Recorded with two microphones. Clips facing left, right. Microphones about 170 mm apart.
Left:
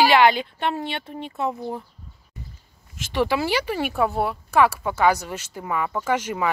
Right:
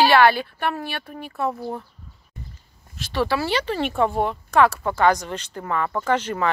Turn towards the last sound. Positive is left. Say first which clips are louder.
# right 1 dB
turn(degrees=10)  # may be behind; listen again after turning